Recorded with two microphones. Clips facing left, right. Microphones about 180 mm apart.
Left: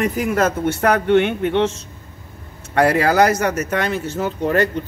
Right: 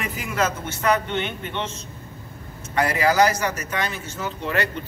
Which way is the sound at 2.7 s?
60° left (ahead or behind).